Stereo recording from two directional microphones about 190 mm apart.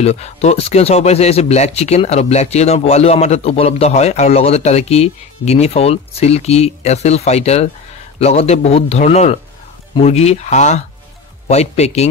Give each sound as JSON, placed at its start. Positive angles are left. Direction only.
{"t": 0.0, "sound": "speech", "side_deg": 35}